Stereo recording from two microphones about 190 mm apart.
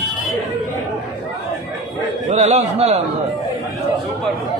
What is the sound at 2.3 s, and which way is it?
Speech, 35° right (ahead or behind).